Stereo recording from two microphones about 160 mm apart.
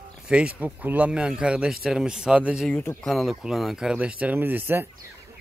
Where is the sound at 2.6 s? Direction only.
10° left (ahead or behind).